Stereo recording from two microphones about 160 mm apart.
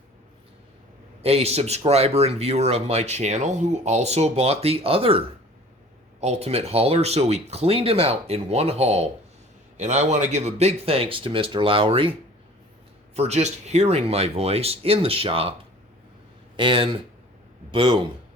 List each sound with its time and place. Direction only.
1.2 s speech: 40° right (ahead or behind)
13.1 s speech: 45° right (ahead or behind)
16.6 s speech: 30° right (ahead or behind)